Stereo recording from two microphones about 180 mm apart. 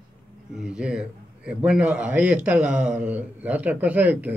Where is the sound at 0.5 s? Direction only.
5° right (ahead or behind).